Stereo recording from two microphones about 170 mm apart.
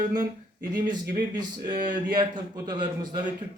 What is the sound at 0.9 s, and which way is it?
Speech, 50° right (ahead or behind).